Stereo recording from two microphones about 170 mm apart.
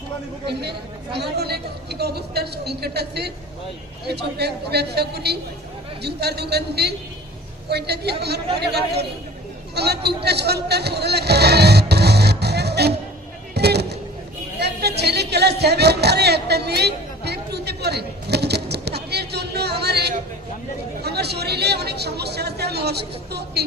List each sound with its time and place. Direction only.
0.4 s a woman's voice: 75° right (ahead or behind)
10.2 s music: 75° right (ahead or behind)
13.5 s a sound: 75° right (ahead or behind)
21.0 s speech: 70° right (ahead or behind)